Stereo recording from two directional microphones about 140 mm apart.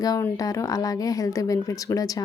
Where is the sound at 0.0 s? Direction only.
25° left (ahead or behind).